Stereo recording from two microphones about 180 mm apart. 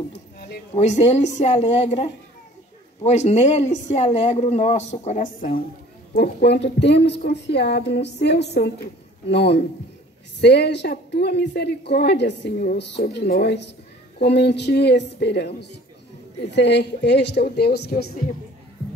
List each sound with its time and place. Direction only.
0.1 s a sound: 65° left (ahead or behind)
0.7 s speech: 40° left (ahead or behind)
6.1 s a woman's voice: 65° left (ahead or behind)